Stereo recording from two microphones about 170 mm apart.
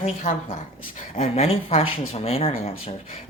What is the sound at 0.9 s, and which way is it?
Speech, 40° left (ahead or behind).